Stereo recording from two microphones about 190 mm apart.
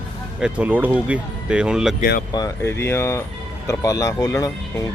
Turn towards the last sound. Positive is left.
turn(degrees=15)  # may be behind; listen again after turning